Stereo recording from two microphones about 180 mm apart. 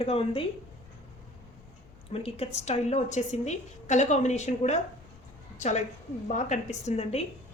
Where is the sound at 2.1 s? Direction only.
35° left (ahead or behind).